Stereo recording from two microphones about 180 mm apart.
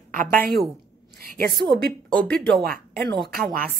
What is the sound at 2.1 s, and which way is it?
Speech, 5° left (ahead or behind).